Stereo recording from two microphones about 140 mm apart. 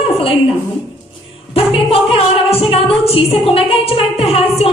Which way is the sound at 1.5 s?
45° left (ahead or behind).